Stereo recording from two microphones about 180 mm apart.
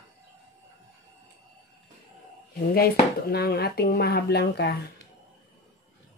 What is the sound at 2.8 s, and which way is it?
Speech, 55° left (ahead or behind).